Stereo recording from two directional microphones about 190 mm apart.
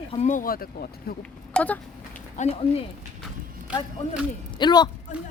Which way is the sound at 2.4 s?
35° left (ahead or behind).